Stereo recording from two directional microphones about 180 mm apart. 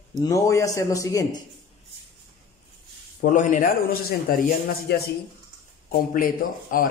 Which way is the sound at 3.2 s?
45° left (ahead or behind).